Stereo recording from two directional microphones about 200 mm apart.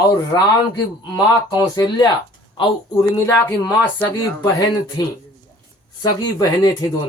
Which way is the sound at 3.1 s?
20° left (ahead or behind).